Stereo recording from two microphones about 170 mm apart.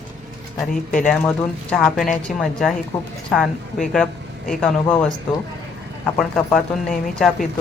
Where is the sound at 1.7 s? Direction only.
Centre (ahead or behind).